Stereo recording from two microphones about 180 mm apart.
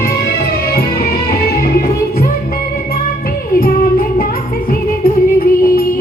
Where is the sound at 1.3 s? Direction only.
55° left (ahead or behind).